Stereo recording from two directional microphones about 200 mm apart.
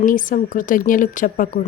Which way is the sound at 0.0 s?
40° left (ahead or behind).